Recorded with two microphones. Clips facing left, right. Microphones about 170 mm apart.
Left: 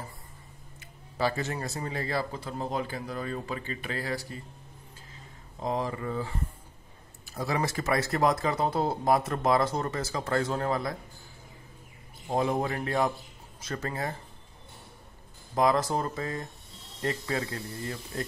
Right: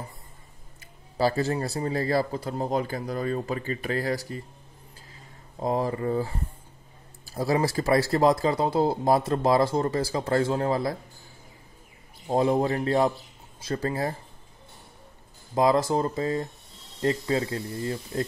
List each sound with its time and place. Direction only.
1.1 s speech: 35° right (ahead or behind)
5.6 s speech: 35° right (ahead or behind)
12.3 s speech: 30° right (ahead or behind)
15.5 s speech: 25° right (ahead or behind)